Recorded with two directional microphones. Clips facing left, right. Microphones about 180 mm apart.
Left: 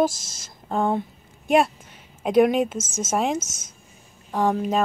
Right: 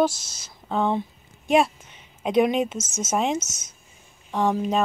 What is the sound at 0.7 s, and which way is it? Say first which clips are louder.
Speech: left 1 dB; 5° left (ahead or behind).